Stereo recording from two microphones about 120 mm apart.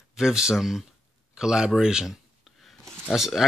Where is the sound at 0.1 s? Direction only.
5° right (ahead or behind).